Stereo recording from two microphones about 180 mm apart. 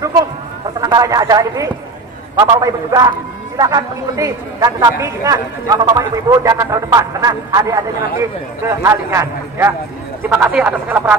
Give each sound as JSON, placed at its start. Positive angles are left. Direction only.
{"t": 0.7, "sound": "a man's voice", "side_deg": -20}